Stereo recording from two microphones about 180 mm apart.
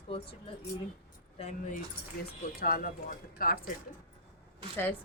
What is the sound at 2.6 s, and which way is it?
Speech, 55° left (ahead or behind).